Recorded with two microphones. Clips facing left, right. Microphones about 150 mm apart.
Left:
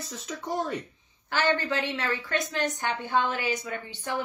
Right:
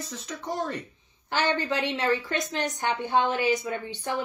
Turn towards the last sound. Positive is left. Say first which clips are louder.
# right 4 dB
turn(degrees=-15)  # may be behind; listen again after turning